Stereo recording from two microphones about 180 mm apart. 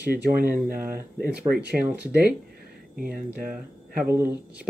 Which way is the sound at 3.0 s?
50° right (ahead or behind).